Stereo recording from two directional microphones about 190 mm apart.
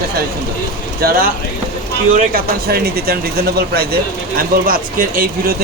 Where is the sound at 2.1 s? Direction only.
50° right (ahead or behind).